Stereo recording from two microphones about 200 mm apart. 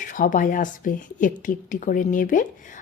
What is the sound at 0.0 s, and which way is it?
A woman's voice, 40° left (ahead or behind).